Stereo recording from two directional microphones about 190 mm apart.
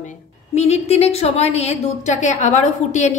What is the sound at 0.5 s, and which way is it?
A woman's voice, 35° left (ahead or behind).